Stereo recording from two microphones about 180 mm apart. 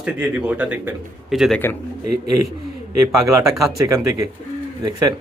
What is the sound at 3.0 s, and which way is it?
A man's voice, 15° right (ahead or behind).